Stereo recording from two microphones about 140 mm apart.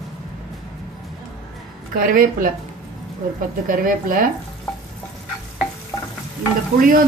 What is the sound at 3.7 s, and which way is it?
Speech, 75° right (ahead or behind).